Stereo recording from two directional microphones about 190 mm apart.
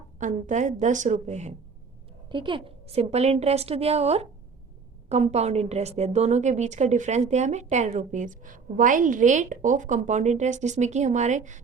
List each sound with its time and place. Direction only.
0.2 s a woman's voice: 40° right (ahead or behind)
2.3 s a woman's voice: 25° right (ahead or behind)